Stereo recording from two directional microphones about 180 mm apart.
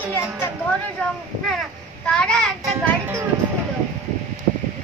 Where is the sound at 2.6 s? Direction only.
15° right (ahead or behind).